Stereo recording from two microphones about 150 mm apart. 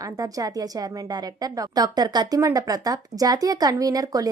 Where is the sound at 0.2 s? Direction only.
25° right (ahead or behind).